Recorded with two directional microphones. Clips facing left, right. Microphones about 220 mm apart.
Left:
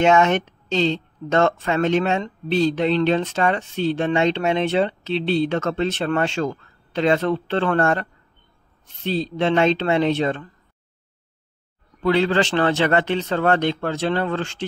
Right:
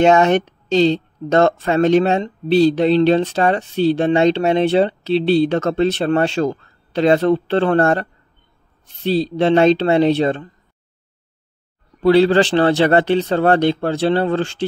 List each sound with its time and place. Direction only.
0.0 s speech: 35° right (ahead or behind)
12.0 s speech: 35° right (ahead or behind)